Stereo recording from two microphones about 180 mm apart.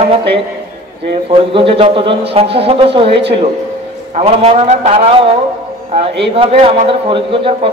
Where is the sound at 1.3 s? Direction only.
30° right (ahead or behind).